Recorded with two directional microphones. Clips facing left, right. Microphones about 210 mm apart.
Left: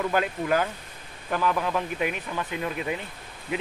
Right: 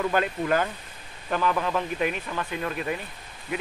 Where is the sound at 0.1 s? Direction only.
5° left (ahead or behind).